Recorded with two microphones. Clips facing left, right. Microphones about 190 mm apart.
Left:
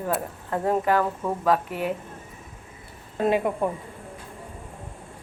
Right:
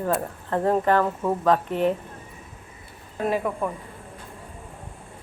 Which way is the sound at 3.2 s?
20° left (ahead or behind).